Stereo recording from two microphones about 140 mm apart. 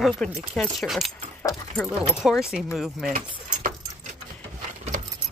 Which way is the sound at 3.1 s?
75° right (ahead or behind).